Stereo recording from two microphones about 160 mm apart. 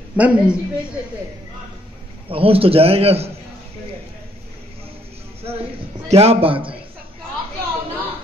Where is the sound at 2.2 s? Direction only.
35° right (ahead or behind).